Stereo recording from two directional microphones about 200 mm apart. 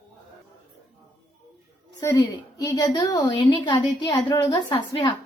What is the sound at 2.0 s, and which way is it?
A woman's voice, 20° left (ahead or behind).